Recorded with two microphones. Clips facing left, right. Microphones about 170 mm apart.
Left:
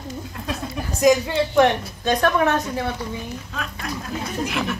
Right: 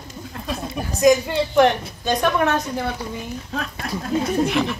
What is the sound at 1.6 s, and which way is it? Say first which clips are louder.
Speech: right 1 dB; 5° right (ahead or behind).